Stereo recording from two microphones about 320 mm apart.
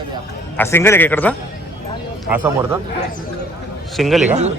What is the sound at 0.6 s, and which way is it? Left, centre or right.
Speech, centre.